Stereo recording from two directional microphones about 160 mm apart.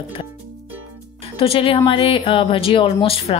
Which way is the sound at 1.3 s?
35° left (ahead or behind).